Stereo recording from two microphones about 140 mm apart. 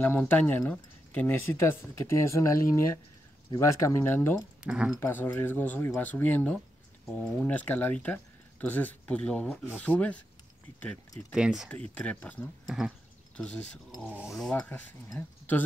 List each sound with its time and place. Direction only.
0.0 s speech: 15° left (ahead or behind)
4.4 s speech: 5° right (ahead or behind)
5.0 s speech: 15° left (ahead or behind)
11.3 s speech: 5° right (ahead or behind)
11.9 s speech: 10° left (ahead or behind)
12.6 s speech: centre (ahead or behind)
14.5 s speech: 10° left (ahead or behind)